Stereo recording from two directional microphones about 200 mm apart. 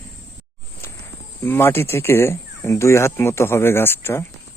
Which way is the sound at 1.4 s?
10° left (ahead or behind).